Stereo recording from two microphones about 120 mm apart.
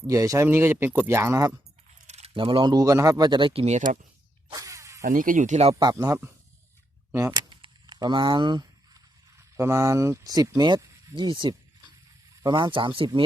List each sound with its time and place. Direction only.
0.1 s speech: 25° right (ahead or behind)
2.0 s speech: 60° right (ahead or behind)
4.5 s a sound: 25° right (ahead or behind)
5.0 s speech: 90° right
5.8 s speech: 30° right (ahead or behind)
7.1 s speech: 20° right (ahead or behind)
7.3 s a sound: 40° right (ahead or behind)
9.6 s speech: 25° right (ahead or behind); by 13.1 s 45° right (ahead or behind)